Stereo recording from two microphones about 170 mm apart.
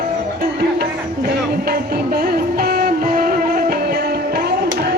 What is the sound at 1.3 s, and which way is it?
Music, 70° right (ahead or behind).